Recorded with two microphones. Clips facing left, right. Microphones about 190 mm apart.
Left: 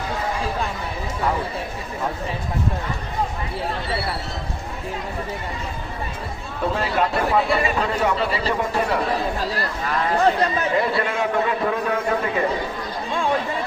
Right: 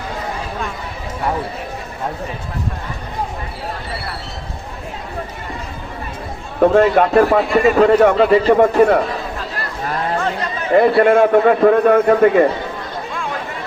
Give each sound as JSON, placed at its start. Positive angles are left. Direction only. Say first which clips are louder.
{"t": 6.6, "sound": "a man's voice", "louder": "right 11 dB", "side_deg": -55}
{"t": 7.3, "sound": "a man's voice", "louder": "right 8 dB", "side_deg": -50}
{"t": 9.6, "sound": "chatter", "louder": "right 1 dB", "side_deg": -40}
{"t": 10.8, "sound": "a man's voice", "louder": "right 15 dB", "side_deg": -55}